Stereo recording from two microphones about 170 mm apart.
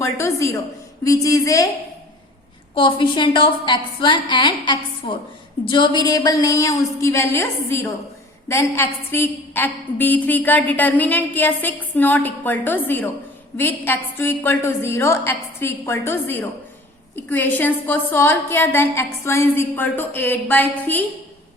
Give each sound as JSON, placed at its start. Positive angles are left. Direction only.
{"t": 0.0, "sound": "a woman's voice", "side_deg": 15}
{"t": 2.7, "sound": "a woman's voice", "side_deg": 30}